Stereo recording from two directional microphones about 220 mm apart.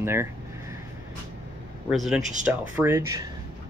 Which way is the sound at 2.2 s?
35° right (ahead or behind).